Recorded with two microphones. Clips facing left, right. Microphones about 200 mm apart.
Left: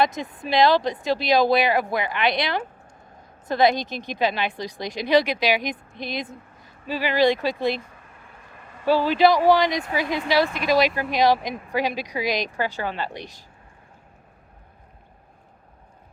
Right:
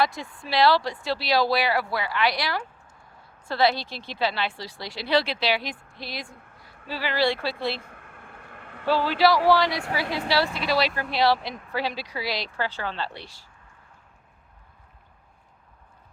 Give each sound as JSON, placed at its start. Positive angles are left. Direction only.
{"t": 0.0, "sound": "a woman's voice", "side_deg": 20}
{"t": 7.8, "sound": "a sound", "side_deg": -60}
{"t": 8.9, "sound": "a woman's voice", "side_deg": 15}